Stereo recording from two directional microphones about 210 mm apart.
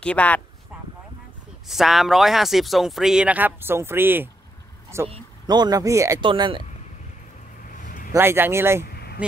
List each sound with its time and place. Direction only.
0.0 s speech: 5° left (ahead or behind)
1.7 s a man's voice: centre (ahead or behind)
5.0 s speech: 25° right (ahead or behind)
7.8 s vehicle: 40° left (ahead or behind)
8.1 s speech: 10° right (ahead or behind)
8.8 s a sound: 50° left (ahead or behind)